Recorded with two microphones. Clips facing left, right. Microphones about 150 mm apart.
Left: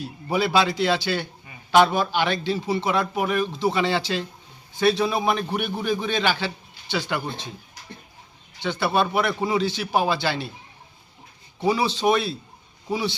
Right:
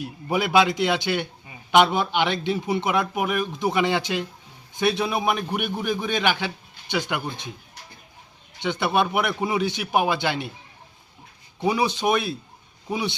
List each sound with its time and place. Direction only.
0.0 s a man's voice: 15° right (ahead or behind)
8.6 s a man's voice: 20° right (ahead or behind)
11.7 s a man's voice: 15° right (ahead or behind)